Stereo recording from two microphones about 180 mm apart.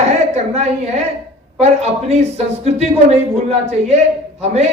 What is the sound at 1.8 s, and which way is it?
A man's voice, 35° right (ahead or behind).